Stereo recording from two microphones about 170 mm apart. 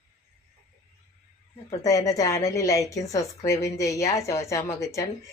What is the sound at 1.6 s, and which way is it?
A woman's voice, 20° left (ahead or behind).